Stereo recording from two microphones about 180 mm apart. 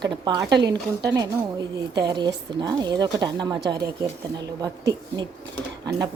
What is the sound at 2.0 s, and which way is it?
A woman's voice, 25° right (ahead or behind).